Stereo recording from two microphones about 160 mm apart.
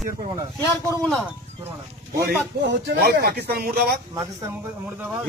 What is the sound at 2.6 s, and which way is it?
Speech, 90° right.